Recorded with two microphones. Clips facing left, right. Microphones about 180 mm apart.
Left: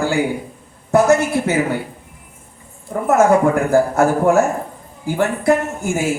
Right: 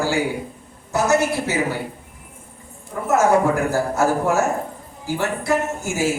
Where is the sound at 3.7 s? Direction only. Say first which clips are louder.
Left 5 dB; 55° left (ahead or behind).